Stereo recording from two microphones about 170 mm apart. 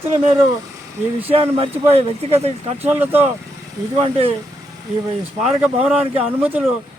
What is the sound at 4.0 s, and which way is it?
Speech, 35° right (ahead or behind).